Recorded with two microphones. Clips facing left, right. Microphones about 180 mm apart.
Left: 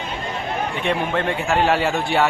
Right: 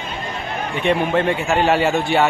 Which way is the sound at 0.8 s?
5° right (ahead or behind).